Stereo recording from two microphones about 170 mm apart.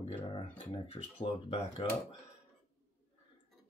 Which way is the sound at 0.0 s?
30° left (ahead or behind).